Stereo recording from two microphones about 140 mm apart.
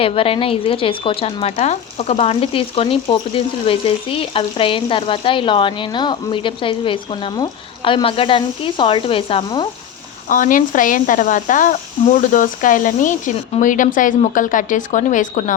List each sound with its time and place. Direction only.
0.0 s speech: 40° left (ahead or behind)
10.2 s speech: 70° left (ahead or behind)